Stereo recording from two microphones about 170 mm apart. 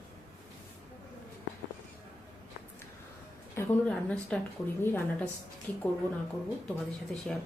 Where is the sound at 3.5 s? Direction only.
5° left (ahead or behind).